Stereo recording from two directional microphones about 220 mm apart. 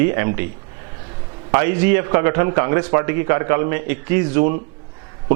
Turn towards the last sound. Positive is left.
turn(degrees=-15)  # may be behind; listen again after turning